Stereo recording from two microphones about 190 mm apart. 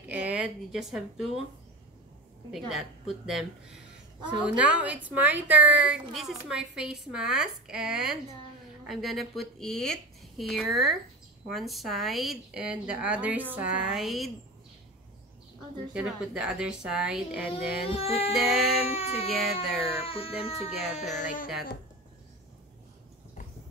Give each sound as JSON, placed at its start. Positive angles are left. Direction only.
{"t": 0.1, "sound": "speech", "side_deg": -5}
{"t": 2.5, "sound": "a woman's voice", "side_deg": 0}
{"t": 15.9, "sound": "a woman's voice", "side_deg": -5}
{"t": 17.8, "sound": "speech", "side_deg": 30}
{"t": 19.3, "sound": "a woman's voice", "side_deg": 0}
{"t": 19.8, "sound": "speech", "side_deg": 30}